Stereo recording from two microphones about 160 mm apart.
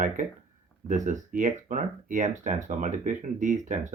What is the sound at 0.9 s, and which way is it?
Speech, 50° right (ahead or behind).